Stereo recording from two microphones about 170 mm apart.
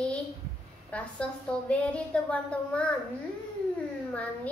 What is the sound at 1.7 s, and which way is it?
Child singing, 5° left (ahead or behind).